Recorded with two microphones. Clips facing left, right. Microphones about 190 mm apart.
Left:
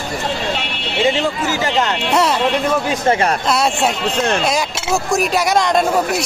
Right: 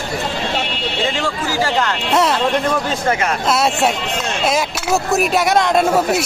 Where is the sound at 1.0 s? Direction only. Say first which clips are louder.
Left 6 dB; 20° left (ahead or behind).